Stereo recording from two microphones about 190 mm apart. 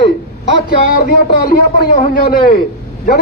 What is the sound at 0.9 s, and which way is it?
Speech, 50° left (ahead or behind).